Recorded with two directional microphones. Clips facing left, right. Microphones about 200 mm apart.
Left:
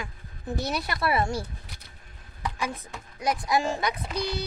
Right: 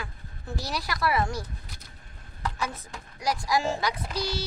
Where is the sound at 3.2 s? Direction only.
20° left (ahead or behind).